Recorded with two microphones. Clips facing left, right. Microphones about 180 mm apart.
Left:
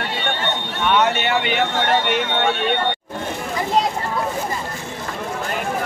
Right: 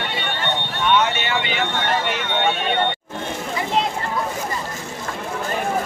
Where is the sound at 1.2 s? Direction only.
60° left (ahead or behind).